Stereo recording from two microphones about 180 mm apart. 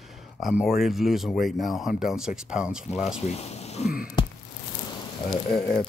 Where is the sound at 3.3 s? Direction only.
35° left (ahead or behind).